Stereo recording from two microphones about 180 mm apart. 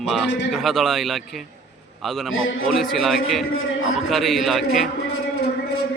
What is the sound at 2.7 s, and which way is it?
Speech, centre (ahead or behind).